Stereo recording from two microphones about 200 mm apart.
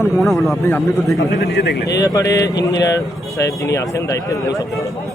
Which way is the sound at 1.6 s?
55° left (ahead or behind).